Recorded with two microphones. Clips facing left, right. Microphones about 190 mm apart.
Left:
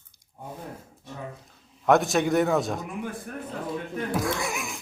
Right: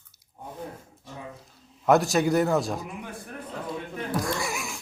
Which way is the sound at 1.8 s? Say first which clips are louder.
Even; centre (ahead or behind).